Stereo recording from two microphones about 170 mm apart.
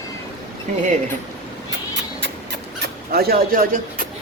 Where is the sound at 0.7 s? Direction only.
45° right (ahead or behind).